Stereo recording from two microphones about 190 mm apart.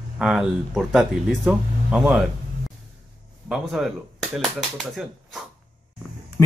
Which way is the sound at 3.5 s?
Centre (ahead or behind).